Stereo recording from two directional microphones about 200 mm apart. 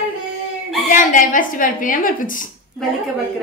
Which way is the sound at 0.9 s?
40° left (ahead or behind).